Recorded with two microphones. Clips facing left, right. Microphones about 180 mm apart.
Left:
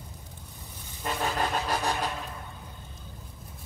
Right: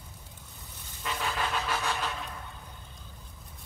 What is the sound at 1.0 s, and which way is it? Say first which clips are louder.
Vehicle: left 4 dB; 45° left (ahead or behind).